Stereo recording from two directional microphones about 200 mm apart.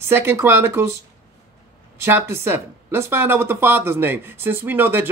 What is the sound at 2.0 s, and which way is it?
Speech, 10° right (ahead or behind).